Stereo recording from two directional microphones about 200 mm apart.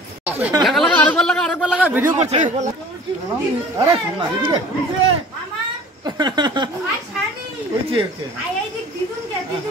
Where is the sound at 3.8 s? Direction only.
25° right (ahead or behind).